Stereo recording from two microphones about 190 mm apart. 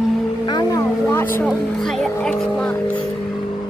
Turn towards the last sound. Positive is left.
turn(degrees=5)  # may be behind; listen again after turning